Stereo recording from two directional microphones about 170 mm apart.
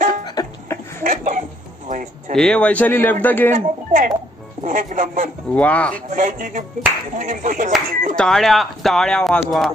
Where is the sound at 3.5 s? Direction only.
50° right (ahead or behind).